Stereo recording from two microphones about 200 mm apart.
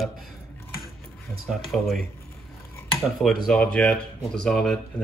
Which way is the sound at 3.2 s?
Centre (ahead or behind).